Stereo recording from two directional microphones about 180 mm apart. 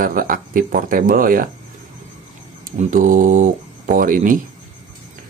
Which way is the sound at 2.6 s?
50° right (ahead or behind).